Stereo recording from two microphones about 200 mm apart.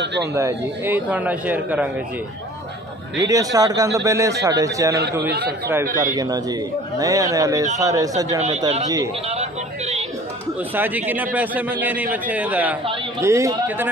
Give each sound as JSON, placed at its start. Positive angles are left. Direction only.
{"t": 0.3, "sound": "a man's voice", "side_deg": -15}
{"t": 3.3, "sound": "a man's voice", "side_deg": -15}
{"t": 6.1, "sound": "a man's voice", "side_deg": -20}
{"t": 8.4, "sound": "speech", "side_deg": -35}
{"t": 8.8, "sound": "a man's voice", "side_deg": -15}
{"t": 9.3, "sound": "a sound", "side_deg": -30}
{"t": 10.7, "sound": "a man's voice", "side_deg": -10}